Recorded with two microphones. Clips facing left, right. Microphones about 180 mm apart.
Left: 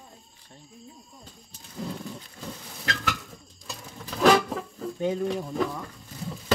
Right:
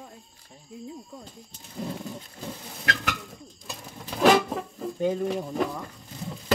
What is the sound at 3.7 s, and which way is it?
Music, 15° right (ahead or behind).